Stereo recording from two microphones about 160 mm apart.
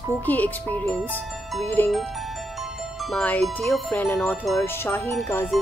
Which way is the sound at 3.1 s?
5° left (ahead or behind).